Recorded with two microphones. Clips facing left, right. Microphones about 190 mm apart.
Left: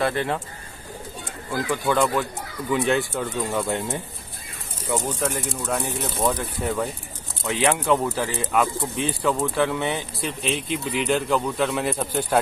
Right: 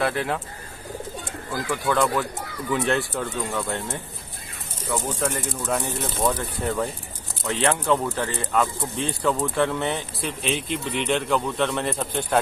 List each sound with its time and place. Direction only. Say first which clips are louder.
0.0 s speech: left 1 dB; centre (ahead or behind)
1.5 s speech: left 2 dB; 5° left (ahead or behind)
3.5 s speech: left 3 dB; 15° left (ahead or behind)
5.2 s speech: even; centre (ahead or behind)